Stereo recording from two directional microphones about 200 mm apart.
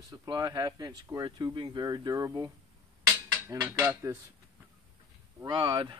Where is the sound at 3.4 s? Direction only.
15° right (ahead or behind).